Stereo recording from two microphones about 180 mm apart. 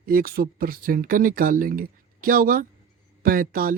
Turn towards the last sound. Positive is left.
turn(degrees=-55)  # may be behind; listen again after turning